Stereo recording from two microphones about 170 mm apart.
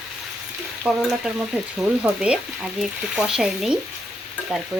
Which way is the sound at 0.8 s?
5° right (ahead or behind).